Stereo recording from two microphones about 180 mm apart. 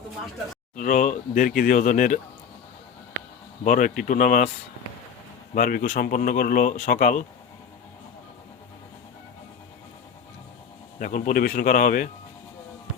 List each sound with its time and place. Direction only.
0.8 s speech: 45° left (ahead or behind)
3.6 s speech: 45° left (ahead or behind)
5.5 s speech: 50° left (ahead or behind)
11.0 s speech: 50° left (ahead or behind)